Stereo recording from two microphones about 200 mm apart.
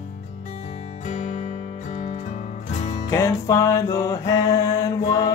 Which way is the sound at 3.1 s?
15° left (ahead or behind).